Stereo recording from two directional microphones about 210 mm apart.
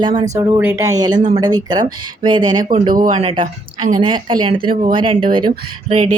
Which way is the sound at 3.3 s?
20° right (ahead or behind).